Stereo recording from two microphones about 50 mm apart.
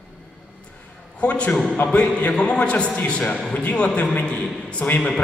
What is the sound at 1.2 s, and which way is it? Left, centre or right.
A man's voice, left.